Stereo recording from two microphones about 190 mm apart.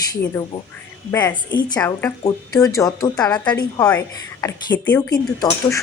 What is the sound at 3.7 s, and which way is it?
Speech, 10° left (ahead or behind).